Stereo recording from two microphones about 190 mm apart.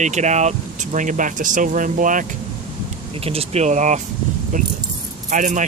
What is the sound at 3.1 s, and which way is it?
Speech, 30° right (ahead or behind).